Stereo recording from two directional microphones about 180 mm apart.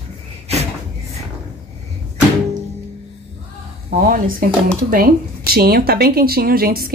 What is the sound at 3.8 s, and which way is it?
A woman's voice, 55° right (ahead or behind).